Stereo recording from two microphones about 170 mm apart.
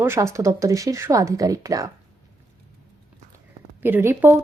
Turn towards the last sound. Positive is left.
turn(degrees=-15)  # may be behind; listen again after turning